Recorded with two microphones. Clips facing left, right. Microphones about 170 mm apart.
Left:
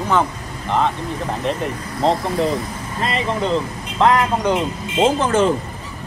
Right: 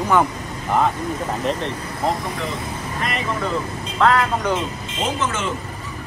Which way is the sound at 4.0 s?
15° left (ahead or behind).